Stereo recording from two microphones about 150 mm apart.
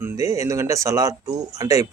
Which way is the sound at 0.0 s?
20° right (ahead or behind).